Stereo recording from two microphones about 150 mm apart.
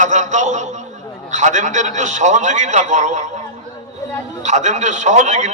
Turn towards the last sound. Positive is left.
turn(degrees=-55)  # may be behind; listen again after turning